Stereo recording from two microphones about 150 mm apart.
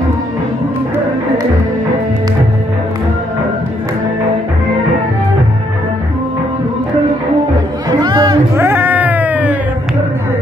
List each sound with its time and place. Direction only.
8.0 s music: 30° right (ahead or behind)
8.5 s cat: 15° right (ahead or behind)